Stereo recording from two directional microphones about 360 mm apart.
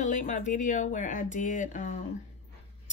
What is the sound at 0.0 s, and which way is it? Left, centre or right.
Speech, left.